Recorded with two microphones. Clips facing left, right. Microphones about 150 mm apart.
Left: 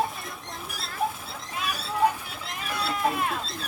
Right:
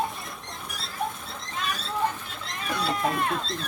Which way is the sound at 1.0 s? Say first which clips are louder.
Left 3 dB; 5° left (ahead or behind).